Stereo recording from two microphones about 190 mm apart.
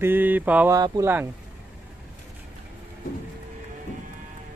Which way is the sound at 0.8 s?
20° right (ahead or behind).